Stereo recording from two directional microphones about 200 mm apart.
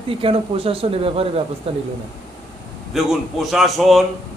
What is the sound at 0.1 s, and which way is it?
Speech, 25° right (ahead or behind).